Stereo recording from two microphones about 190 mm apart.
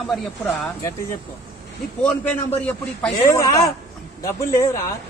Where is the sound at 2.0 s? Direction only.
5° left (ahead or behind).